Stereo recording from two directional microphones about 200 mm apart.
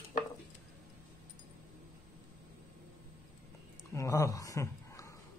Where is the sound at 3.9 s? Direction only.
15° left (ahead or behind).